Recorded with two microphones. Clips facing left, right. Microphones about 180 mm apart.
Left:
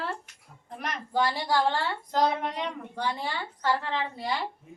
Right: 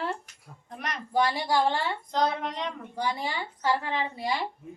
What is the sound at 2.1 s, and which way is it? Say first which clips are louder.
Speech: left 2 dB; 5° left (ahead or behind).